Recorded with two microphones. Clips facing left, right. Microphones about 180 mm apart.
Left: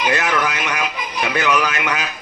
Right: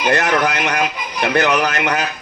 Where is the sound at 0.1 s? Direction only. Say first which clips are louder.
Right 3 dB; 55° right (ahead or behind).